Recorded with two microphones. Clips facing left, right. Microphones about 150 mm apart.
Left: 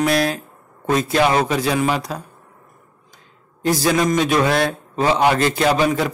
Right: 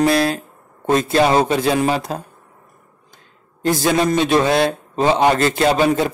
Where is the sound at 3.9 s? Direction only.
30° right (ahead or behind).